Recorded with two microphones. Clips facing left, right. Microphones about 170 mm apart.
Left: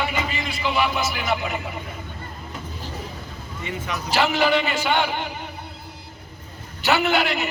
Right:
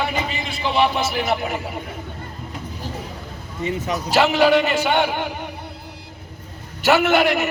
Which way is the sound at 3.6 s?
40° right (ahead or behind).